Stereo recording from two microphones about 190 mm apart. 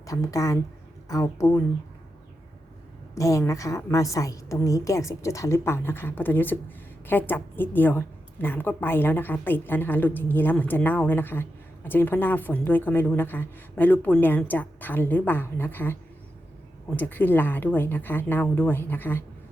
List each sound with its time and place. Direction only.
0.0 s a woman's voice: 15° left (ahead or behind)
3.2 s a woman's voice: 15° left (ahead or behind)